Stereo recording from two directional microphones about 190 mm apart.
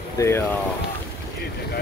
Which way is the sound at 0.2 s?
15° left (ahead or behind).